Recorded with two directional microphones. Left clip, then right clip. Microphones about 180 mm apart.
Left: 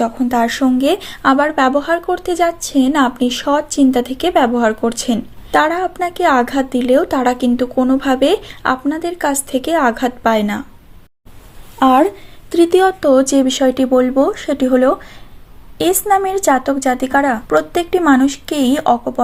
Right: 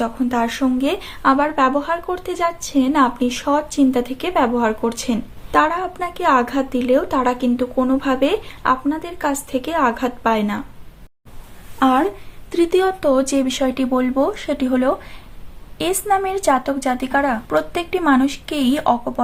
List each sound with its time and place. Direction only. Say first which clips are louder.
0.0 s speech: left 5 dB; 30° left (ahead or behind)
11.8 s a woman's voice: left 5 dB; 30° left (ahead or behind)